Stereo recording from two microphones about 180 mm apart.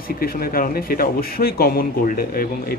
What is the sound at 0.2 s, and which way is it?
Speech, 55° left (ahead or behind).